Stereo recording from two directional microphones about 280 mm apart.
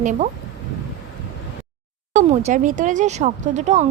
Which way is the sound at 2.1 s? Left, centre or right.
Right.